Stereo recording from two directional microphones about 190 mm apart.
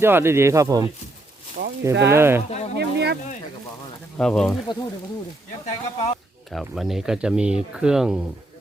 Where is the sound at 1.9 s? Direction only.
60° right (ahead or behind).